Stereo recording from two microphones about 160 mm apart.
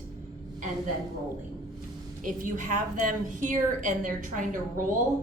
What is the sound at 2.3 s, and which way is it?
A woman's voice, 55° right (ahead or behind).